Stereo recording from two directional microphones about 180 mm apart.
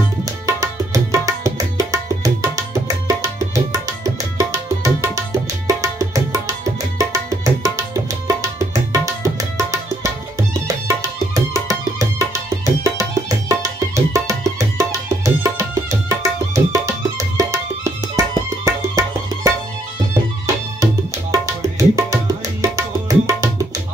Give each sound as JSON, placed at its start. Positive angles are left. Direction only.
{"t": 0.2, "sound": "tabla", "side_deg": -20}
{"t": 10.9, "sound": "music", "side_deg": -15}
{"t": 13.5, "sound": "music", "side_deg": -20}
{"t": 20.8, "sound": "tabla", "side_deg": -15}